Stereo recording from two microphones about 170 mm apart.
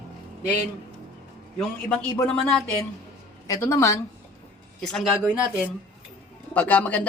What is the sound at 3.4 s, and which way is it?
Speech, 20° left (ahead or behind).